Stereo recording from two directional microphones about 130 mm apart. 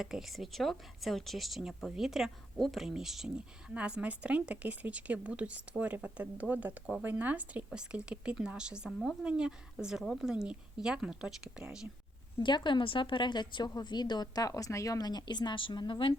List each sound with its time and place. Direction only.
0.0 s speech: 5° right (ahead or behind)
12.4 s a woman's voice: 35° left (ahead or behind)